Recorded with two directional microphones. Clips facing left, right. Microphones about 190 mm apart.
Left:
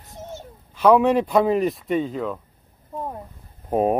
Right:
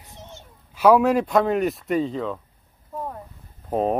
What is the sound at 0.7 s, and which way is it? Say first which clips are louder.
Speech: even; 5° right (ahead or behind).